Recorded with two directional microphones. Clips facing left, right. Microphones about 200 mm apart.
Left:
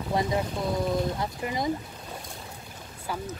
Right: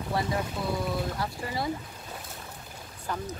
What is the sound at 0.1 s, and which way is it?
Speech, 20° left (ahead or behind).